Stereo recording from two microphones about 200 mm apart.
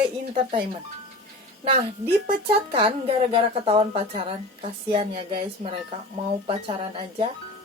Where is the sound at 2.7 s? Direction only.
30° right (ahead or behind).